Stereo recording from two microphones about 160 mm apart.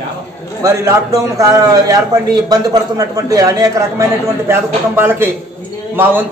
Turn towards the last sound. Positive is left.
turn(degrees=-10)  # may be behind; listen again after turning